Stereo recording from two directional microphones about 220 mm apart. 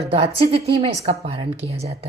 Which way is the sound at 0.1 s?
25° right (ahead or behind).